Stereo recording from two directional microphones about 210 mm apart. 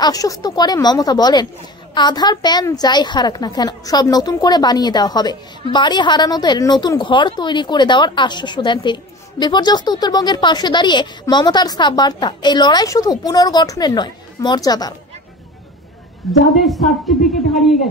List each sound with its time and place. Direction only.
0.0 s a woman's voice: 15° left (ahead or behind)
16.3 s a woman's voice: centre (ahead or behind)